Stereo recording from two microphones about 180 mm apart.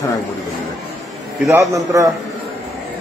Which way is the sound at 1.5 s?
20° right (ahead or behind).